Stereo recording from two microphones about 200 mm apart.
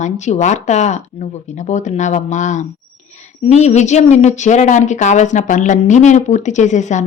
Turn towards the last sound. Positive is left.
turn(degrees=35)  # may be behind; listen again after turning